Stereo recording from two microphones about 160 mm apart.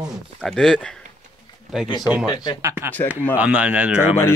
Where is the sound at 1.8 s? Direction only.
25° left (ahead or behind).